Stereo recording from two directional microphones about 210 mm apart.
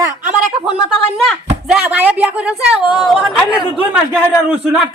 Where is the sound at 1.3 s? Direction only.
5° right (ahead or behind).